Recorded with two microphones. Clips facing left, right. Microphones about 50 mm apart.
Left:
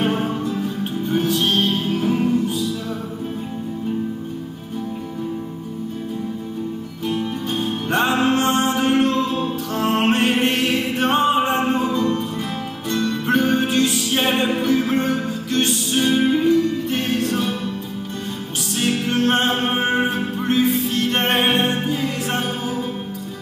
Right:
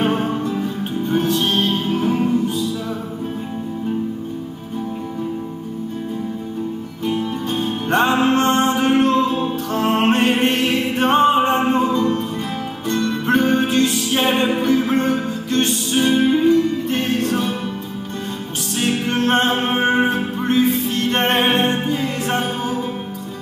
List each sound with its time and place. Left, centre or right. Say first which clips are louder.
0.0 s music: right 2 dB; centre
7.1 s music: right 2 dB; centre
18.8 s music: even; centre